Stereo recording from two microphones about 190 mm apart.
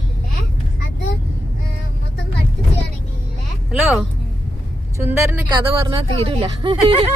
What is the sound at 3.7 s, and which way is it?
Speech, 5° right (ahead or behind).